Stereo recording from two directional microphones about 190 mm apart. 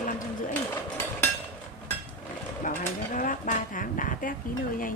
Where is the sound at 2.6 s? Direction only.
45° left (ahead or behind).